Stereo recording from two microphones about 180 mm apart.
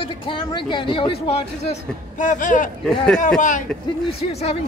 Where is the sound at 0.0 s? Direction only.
30° left (ahead or behind).